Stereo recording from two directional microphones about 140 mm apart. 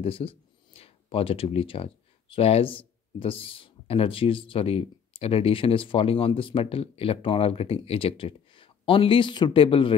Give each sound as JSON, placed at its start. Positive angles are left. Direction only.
{"t": 0.0, "sound": "speech", "side_deg": 40}